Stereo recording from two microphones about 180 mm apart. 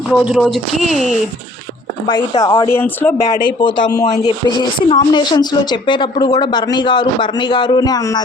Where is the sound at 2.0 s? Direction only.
25° left (ahead or behind).